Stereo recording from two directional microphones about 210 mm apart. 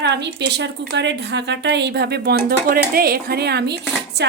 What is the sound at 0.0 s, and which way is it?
A woman's voice, 55° right (ahead or behind).